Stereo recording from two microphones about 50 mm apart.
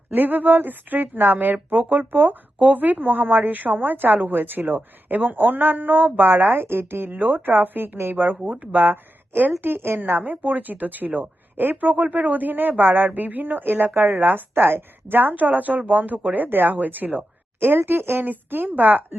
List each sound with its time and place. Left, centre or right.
0.1 s a woman's voice: right